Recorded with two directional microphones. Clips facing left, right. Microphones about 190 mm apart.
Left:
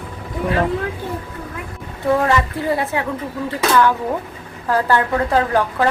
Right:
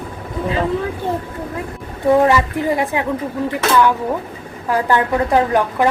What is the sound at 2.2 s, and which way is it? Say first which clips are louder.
Speech: right 4 dB; 15° right (ahead or behind).